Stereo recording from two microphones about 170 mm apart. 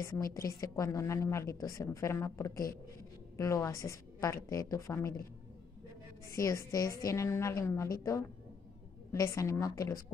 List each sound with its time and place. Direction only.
0.0 s a woman's voice: 20° left (ahead or behind)
6.3 s a woman's voice: 20° left (ahead or behind)
9.1 s a woman's voice: 20° left (ahead or behind)